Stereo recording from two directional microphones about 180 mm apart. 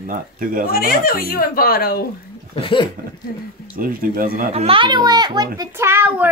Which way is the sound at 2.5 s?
30° left (ahead or behind).